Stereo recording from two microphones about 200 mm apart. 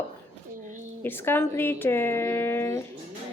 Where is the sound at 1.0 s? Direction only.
10° left (ahead or behind).